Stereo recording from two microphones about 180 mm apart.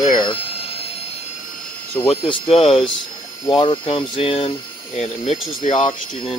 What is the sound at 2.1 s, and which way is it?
Speech, 25° left (ahead or behind).